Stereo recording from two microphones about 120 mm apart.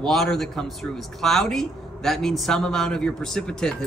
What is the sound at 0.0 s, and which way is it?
A man's voice, centre (ahead or behind).